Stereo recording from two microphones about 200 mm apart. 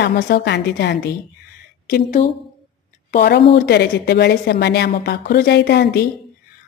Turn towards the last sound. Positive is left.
turn(degrees=55)  # may be behind; listen again after turning